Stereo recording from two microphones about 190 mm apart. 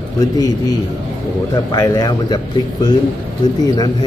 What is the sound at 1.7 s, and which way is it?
A man's voice, 15° left (ahead or behind).